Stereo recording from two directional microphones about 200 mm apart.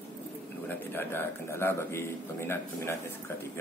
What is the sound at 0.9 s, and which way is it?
Speech, 10° left (ahead or behind).